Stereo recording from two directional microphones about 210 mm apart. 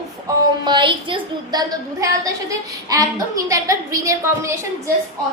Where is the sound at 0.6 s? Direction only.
20° right (ahead or behind).